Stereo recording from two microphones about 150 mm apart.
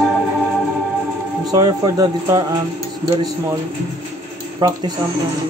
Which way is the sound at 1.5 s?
25° right (ahead or behind).